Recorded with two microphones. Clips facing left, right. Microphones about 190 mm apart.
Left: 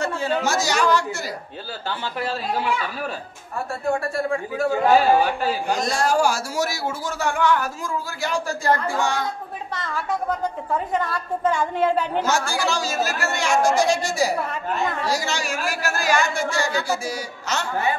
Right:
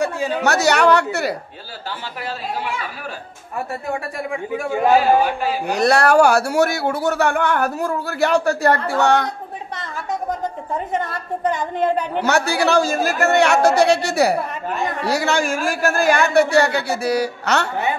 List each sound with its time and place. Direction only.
0.0 s a sound: 15° right (ahead or behind)
0.4 s a man's voice: 65° right (ahead or behind)
4.2 s speech: 15° right (ahead or behind)
5.7 s a man's voice: 65° right (ahead or behind)
9.8 s a woman's voice: 20° right (ahead or behind)
12.2 s a man's voice: 65° right (ahead or behind)